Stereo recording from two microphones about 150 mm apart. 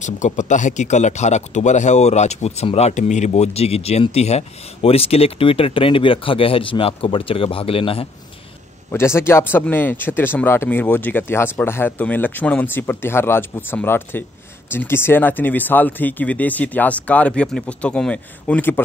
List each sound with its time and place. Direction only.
0.0 s speech: 55° left (ahead or behind); by 8.1 s 40° left (ahead or behind)
8.9 s speech: 15° left (ahead or behind)